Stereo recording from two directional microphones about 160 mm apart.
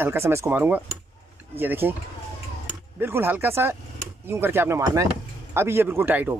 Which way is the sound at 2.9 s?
15° right (ahead or behind).